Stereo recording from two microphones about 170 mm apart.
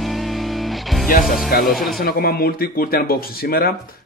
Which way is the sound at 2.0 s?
60° left (ahead or behind).